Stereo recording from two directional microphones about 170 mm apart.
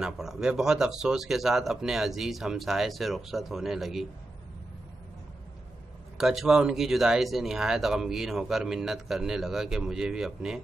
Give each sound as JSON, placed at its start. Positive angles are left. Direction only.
{"t": 0.0, "sound": "speech", "side_deg": -5}
{"t": 6.1, "sound": "speech", "side_deg": 0}